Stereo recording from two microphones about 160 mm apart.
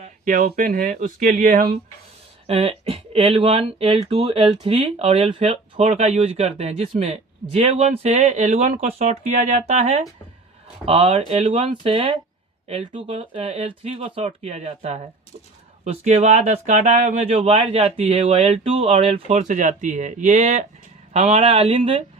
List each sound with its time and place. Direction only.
0.0 s speech: 55° right (ahead or behind)
2.5 s speech: 40° right (ahead or behind)